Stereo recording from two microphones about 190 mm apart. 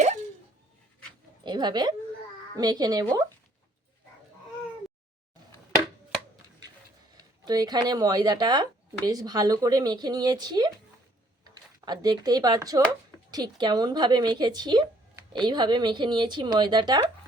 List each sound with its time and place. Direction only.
1.5 s speech: 25° right (ahead or behind)
7.2 s speech: 20° right (ahead or behind)